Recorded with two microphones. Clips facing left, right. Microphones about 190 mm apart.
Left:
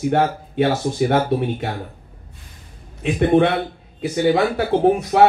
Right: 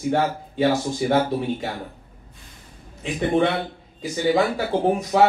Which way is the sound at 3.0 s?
60° left (ahead or behind).